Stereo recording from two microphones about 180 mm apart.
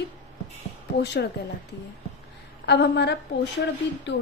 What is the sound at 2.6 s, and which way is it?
Speech, 70° left (ahead or behind).